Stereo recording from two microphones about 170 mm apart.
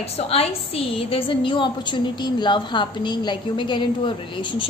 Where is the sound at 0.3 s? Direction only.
35° left (ahead or behind).